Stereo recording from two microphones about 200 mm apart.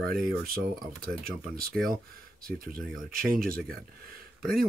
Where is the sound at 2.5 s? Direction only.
45° right (ahead or behind).